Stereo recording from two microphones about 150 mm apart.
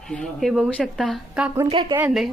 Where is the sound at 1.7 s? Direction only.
30° right (ahead or behind).